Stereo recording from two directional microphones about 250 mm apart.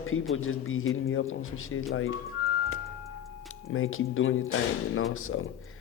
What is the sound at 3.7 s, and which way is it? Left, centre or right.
Speech, left.